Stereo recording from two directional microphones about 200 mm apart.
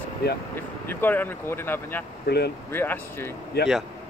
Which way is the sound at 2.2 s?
55° left (ahead or behind).